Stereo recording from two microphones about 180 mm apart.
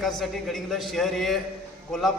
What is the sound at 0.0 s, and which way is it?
A man's voice, centre (ahead or behind).